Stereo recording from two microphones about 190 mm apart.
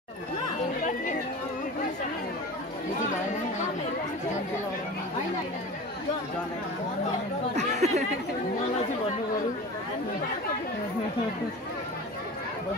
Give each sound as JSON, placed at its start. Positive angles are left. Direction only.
{"t": 7.5, "sound": "speech", "side_deg": -35}